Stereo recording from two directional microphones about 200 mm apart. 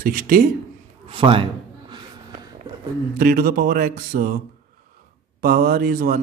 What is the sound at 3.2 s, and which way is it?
Speech, 45° right (ahead or behind).